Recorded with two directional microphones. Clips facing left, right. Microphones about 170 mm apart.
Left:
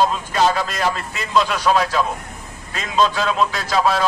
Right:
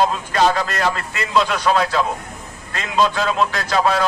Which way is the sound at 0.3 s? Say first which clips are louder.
Right 1 dB; 5° left (ahead or behind).